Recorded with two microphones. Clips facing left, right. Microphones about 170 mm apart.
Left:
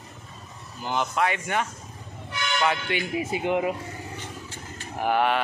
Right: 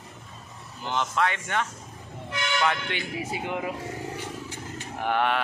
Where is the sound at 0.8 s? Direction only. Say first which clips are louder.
Left 1 dB; 10° left (ahead or behind).